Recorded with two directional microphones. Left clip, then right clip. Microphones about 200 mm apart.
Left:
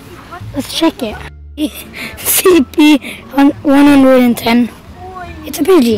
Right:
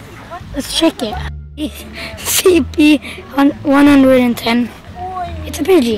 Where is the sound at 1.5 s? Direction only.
40° left (ahead or behind).